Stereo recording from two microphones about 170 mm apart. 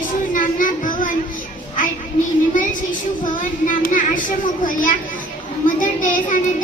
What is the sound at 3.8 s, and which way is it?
Child singing, 50° left (ahead or behind).